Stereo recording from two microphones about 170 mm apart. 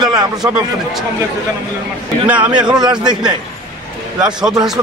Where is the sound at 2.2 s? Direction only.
10° right (ahead or behind).